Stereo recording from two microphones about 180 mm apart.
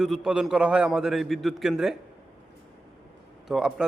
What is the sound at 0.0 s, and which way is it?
A man's voice, centre (ahead or behind).